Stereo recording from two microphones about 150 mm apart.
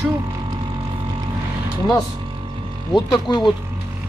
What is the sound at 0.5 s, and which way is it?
Vehicle, 30° right (ahead or behind).